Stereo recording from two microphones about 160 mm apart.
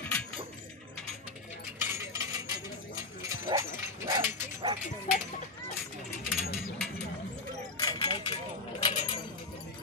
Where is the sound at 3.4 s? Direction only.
20° right (ahead or behind).